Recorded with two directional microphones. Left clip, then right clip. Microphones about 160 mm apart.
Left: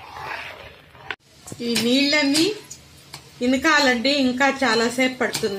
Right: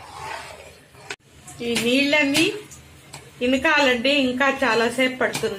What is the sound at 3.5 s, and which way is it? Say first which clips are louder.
A woman's voice: even; 60° left (ahead or behind).